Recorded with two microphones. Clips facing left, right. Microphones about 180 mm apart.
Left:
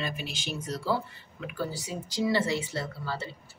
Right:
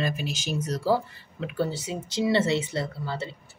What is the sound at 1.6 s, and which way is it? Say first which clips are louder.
Speech: right 5 dB; 25° right (ahead or behind).